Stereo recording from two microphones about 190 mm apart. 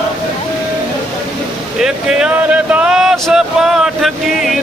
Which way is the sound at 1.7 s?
5° right (ahead or behind).